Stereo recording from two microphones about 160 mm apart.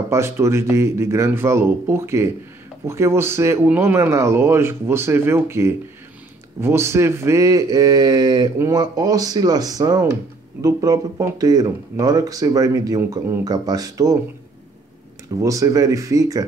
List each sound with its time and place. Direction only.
0.1 s speech: 15° right (ahead or behind)
15.3 s speech: 20° right (ahead or behind)